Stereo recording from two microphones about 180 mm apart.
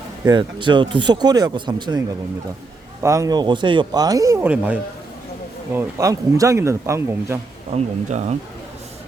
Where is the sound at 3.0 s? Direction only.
15° right (ahead or behind).